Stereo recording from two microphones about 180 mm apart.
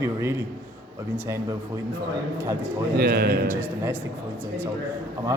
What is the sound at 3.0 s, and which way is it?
Speech, 60° right (ahead or behind).